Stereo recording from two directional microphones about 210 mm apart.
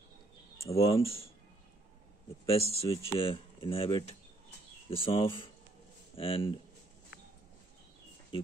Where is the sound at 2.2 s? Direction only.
25° left (ahead or behind).